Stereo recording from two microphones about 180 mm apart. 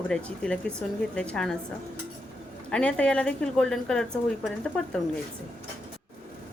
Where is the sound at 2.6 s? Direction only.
5° left (ahead or behind).